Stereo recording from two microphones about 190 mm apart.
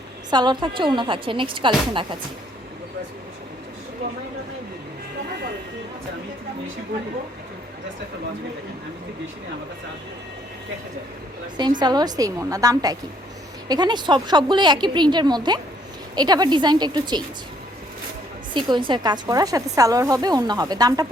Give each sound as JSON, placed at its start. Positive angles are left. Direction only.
{"t": 0.3, "sound": "a woman's voice", "side_deg": -20}
{"t": 11.8, "sound": "a woman's voice", "side_deg": -20}
{"t": 18.5, "sound": "a woman's voice", "side_deg": -25}